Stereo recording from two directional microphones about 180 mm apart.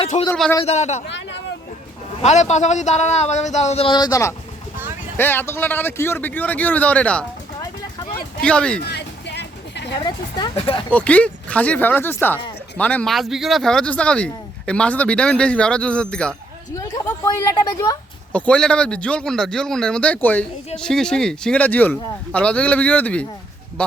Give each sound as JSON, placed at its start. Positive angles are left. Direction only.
{"t": 0.0, "sound": "speech", "side_deg": 30}
{"t": 1.0, "sound": "a sound", "side_deg": 80}
{"t": 2.2, "sound": "speech", "side_deg": 40}
{"t": 8.4, "sound": "speech", "side_deg": 5}
{"t": 8.8, "sound": "music", "side_deg": 65}
{"t": 10.0, "sound": "speech", "side_deg": 25}
{"t": 10.9, "sound": "a man's voice", "side_deg": 10}
{"t": 16.7, "sound": "a woman's voice", "side_deg": 20}
{"t": 18.3, "sound": "a man's voice", "side_deg": 5}